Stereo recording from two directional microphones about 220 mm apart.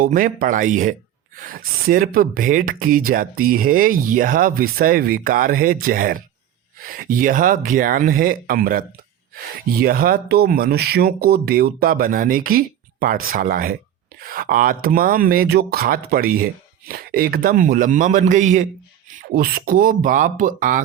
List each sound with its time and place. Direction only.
0.0 s speech: 40° right (ahead or behind)
9.8 s speech: 40° right (ahead or behind)